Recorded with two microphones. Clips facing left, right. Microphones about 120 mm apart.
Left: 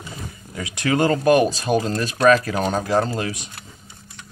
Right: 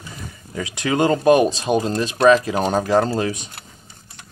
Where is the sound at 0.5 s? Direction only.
30° right (ahead or behind).